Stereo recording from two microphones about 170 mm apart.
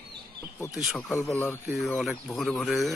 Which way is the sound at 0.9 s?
10° left (ahead or behind).